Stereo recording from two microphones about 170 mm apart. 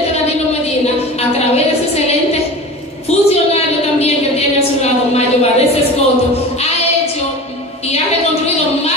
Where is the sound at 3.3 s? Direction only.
40° left (ahead or behind).